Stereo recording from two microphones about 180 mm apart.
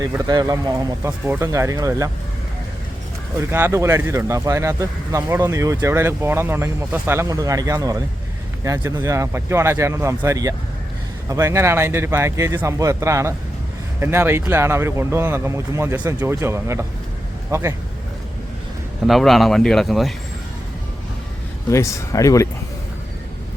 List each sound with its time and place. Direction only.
0.0 s speech: 20° right (ahead or behind)
3.5 s speech: 15° right (ahead or behind)
19.0 s speech: centre (ahead or behind)
21.7 s speech: 15° left (ahead or behind)